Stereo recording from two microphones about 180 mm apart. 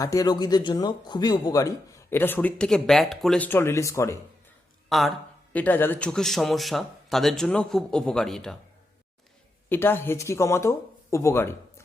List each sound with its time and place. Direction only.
0.0 s a man's voice: 20° left (ahead or behind)
4.9 s speech: centre (ahead or behind)
9.6 s speech: 10° left (ahead or behind)